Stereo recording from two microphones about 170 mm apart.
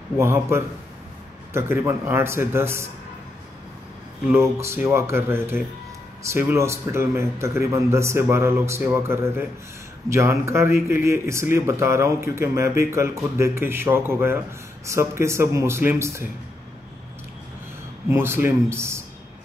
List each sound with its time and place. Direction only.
0.2 s speech: 15° right (ahead or behind)
4.3 s speech: 15° right (ahead or behind)
18.1 s speech: 15° right (ahead or behind)